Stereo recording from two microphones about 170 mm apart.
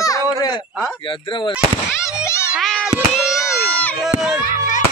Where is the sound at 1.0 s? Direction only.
30° left (ahead or behind).